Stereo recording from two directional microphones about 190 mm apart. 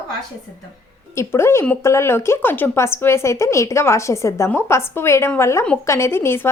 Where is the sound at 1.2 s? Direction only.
15° left (ahead or behind).